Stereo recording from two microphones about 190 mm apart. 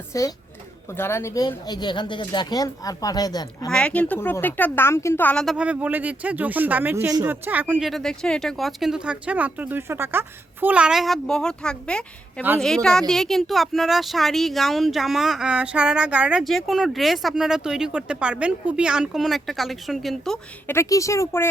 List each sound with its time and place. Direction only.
0.1 s a woman's voice: 15° left (ahead or behind)
3.7 s speech: 5° left (ahead or behind)
20.7 s speech: 15° left (ahead or behind)